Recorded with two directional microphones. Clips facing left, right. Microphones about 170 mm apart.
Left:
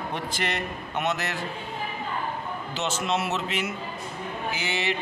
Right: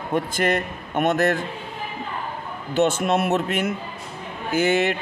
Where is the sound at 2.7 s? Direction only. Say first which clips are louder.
Right 9 dB; 55° right (ahead or behind).